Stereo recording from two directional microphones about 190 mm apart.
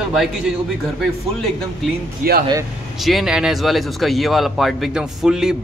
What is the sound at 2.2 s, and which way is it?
Speech, 50° right (ahead or behind).